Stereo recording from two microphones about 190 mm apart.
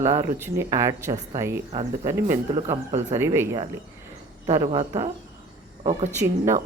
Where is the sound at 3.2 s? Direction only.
15° right (ahead or behind).